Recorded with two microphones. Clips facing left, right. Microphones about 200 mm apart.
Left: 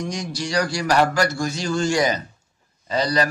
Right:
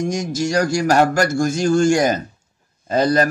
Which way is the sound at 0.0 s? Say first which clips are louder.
Right 7 dB; 45° right (ahead or behind).